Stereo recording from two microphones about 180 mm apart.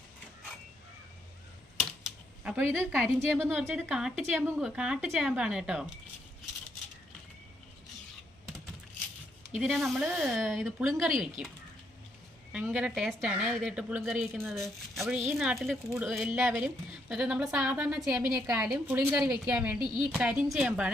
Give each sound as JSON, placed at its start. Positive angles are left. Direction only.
{"t": 1.8, "sound": "typewriter", "side_deg": -5}
{"t": 2.7, "sound": "a woman's voice", "side_deg": -15}
{"t": 9.6, "sound": "a woman's voice", "side_deg": 0}
{"t": 18.3, "sound": "a woman's voice", "side_deg": -20}
{"t": 19.5, "sound": "speech", "side_deg": -5}